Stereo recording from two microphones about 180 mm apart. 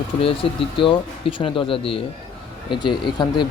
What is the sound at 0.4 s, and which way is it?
Speech, 30° left (ahead or behind).